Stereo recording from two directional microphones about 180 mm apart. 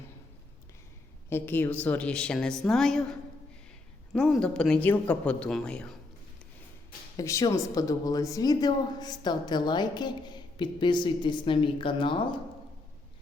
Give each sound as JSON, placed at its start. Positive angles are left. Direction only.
{"t": 1.3, "sound": "a woman's voice", "side_deg": 10}
{"t": 7.2, "sound": "a woman's voice", "side_deg": 20}